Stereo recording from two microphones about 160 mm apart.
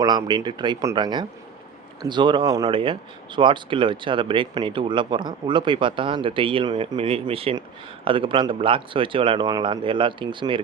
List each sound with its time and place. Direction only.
0.0 s speech: 25° right (ahead or behind)